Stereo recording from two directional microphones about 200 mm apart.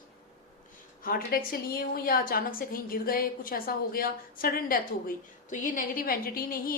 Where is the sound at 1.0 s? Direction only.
45° left (ahead or behind).